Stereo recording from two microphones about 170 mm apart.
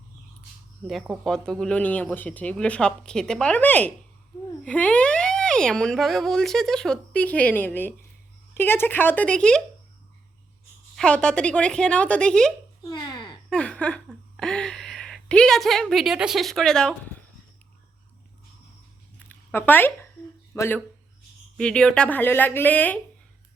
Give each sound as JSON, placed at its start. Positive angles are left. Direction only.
{"t": 0.9, "sound": "speech", "side_deg": 0}
{"t": 10.9, "sound": "speech", "side_deg": 5}
{"t": 12.9, "sound": "babbling", "side_deg": 25}
{"t": 13.5, "sound": "a sound", "side_deg": 5}
{"t": 14.3, "sound": "a woman's voice", "side_deg": 5}
{"t": 19.3, "sound": "a sound", "side_deg": 10}
{"t": 20.5, "sound": "speech", "side_deg": 10}